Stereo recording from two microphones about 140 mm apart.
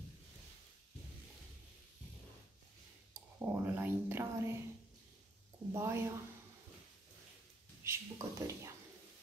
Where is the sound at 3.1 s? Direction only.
15° right (ahead or behind).